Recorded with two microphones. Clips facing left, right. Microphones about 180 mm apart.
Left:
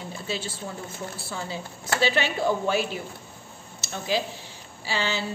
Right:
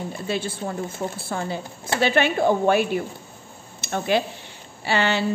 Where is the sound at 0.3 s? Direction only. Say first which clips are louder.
Right 6 dB; 55° right (ahead or behind).